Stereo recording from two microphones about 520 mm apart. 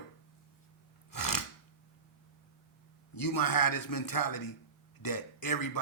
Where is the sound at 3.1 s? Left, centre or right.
Left.